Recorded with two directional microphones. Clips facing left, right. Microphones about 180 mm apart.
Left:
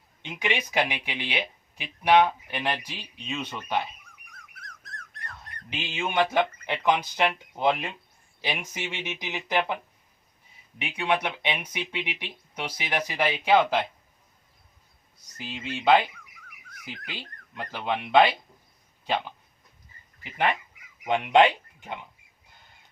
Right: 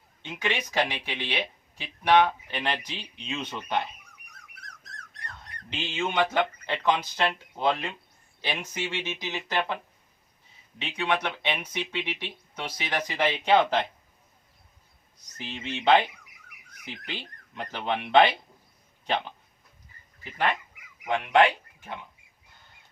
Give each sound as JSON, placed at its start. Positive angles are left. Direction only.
{"t": 0.2, "sound": "speech", "side_deg": 15}
{"t": 4.8, "sound": "a sound", "side_deg": 55}
{"t": 5.7, "sound": "speech", "side_deg": 10}
{"t": 10.8, "sound": "speech", "side_deg": 10}
{"t": 15.4, "sound": "speech", "side_deg": 10}
{"t": 17.2, "sound": "speech", "side_deg": 5}
{"t": 20.3, "sound": "speech", "side_deg": 10}